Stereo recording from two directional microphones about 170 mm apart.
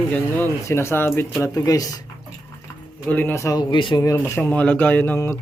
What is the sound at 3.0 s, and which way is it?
Speech, 10° left (ahead or behind).